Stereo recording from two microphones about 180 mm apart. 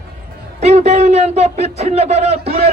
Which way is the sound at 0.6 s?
35° right (ahead or behind).